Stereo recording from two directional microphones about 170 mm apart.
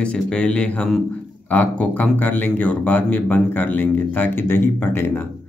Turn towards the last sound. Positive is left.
turn(degrees=15)  # may be behind; listen again after turning